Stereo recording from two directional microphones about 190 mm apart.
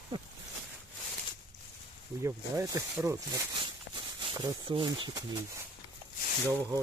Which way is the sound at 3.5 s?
25° right (ahead or behind).